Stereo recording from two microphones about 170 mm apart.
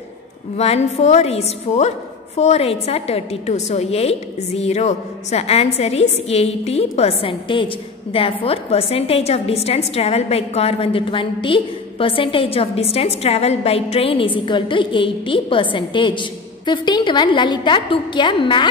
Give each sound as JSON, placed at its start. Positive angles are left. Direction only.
{"t": 0.6, "sound": "a woman's voice", "side_deg": 40}